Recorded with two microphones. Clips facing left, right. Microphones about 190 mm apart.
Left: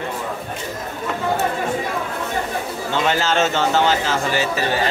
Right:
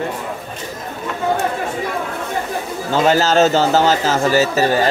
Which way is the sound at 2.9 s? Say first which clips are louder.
Right 6 dB; 40° right (ahead or behind).